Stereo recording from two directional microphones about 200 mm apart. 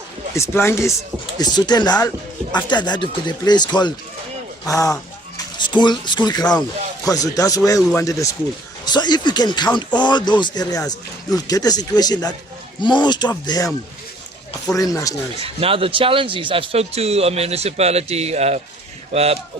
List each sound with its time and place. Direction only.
0.3 s speech: 15° left (ahead or behind)
6.4 s speech: 5° left (ahead or behind)
7.0 s speech: 15° left (ahead or behind)
14.8 s speech: 15° left (ahead or behind)
15.4 s a man's voice: 30° right (ahead or behind)